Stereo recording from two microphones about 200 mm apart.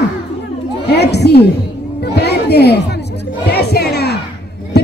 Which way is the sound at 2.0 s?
55° left (ahead or behind).